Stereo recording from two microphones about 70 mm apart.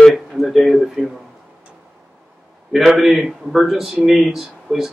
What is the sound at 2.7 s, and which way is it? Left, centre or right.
Speech, centre.